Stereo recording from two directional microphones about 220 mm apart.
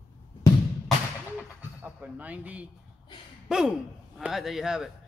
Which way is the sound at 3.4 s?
5° right (ahead or behind).